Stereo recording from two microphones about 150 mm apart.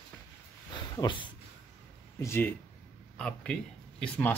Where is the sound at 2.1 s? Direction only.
15° left (ahead or behind).